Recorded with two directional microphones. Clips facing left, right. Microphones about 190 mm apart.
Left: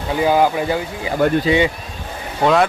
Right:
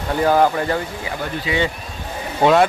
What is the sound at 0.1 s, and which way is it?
Speech, 10° left (ahead or behind).